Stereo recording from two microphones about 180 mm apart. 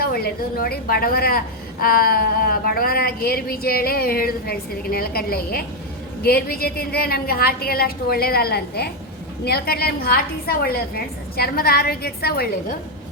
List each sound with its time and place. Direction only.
0.0 s speech: 55° left (ahead or behind)